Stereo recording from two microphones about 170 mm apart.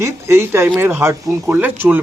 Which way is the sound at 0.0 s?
15° right (ahead or behind).